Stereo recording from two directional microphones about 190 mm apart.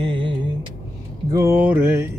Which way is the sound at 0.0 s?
25° right (ahead or behind).